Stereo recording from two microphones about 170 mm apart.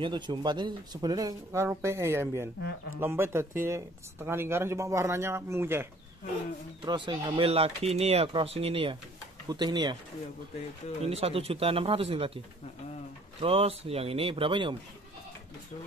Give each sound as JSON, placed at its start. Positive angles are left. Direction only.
{"t": 0.0, "sound": "speech", "side_deg": -25}
{"t": 6.8, "sound": "speech", "side_deg": -25}
{"t": 11.1, "sound": "speech", "side_deg": -35}
{"t": 13.4, "sound": "speech", "side_deg": -35}